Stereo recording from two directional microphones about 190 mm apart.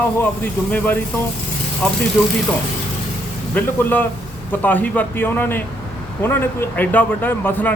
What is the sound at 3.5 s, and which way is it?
A man's voice, 10° left (ahead or behind).